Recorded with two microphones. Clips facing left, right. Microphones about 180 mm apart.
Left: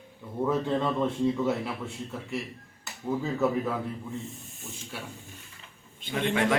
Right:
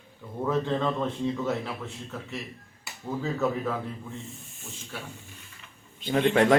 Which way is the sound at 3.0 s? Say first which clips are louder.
Left 1 dB; 5° left (ahead or behind).